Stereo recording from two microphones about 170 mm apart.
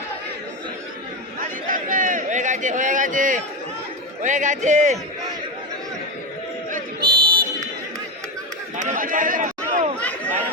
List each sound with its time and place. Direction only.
1.4 s a sound: 50° right (ahead or behind)
4.2 s a man's voice: 45° right (ahead or behind)
7.0 s buzzer: 25° right (ahead or behind)
8.8 s speech: 50° right (ahead or behind)
10.0 s chatter: 10° left (ahead or behind)